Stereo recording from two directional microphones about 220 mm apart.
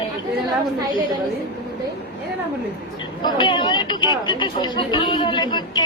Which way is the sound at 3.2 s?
20° left (ahead or behind).